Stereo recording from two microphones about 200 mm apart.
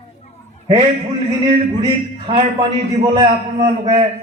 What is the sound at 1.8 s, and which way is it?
A man's voice, 20° right (ahead or behind).